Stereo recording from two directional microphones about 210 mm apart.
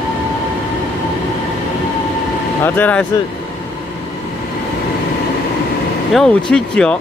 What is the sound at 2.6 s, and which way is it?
Speech, 10° left (ahead or behind).